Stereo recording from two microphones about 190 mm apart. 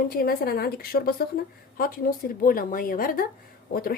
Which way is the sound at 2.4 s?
50° left (ahead or behind).